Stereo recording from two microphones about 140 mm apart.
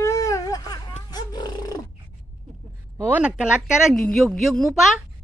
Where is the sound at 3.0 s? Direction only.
10° right (ahead or behind).